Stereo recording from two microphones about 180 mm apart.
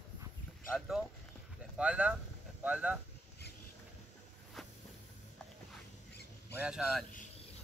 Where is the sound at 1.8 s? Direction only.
5° right (ahead or behind).